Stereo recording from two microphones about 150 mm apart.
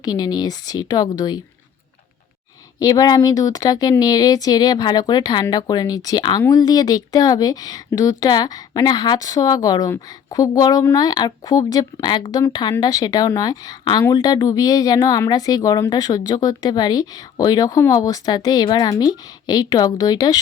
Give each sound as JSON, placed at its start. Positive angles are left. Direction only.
{"t": 0.0, "sound": "speech", "side_deg": 25}
{"t": 2.7, "sound": "speech", "side_deg": 25}